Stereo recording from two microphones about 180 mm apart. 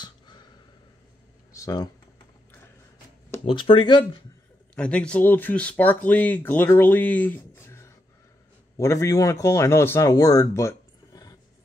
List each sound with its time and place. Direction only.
1.5 s computer keyboard: 20° left (ahead or behind)
3.4 s speech: 30° left (ahead or behind)
4.7 s speech: 5° left (ahead or behind)